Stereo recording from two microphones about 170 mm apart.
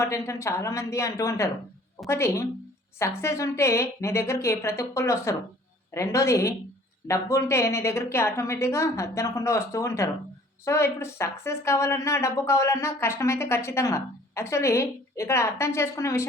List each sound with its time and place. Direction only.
0.0 s speech: 15° left (ahead or behind)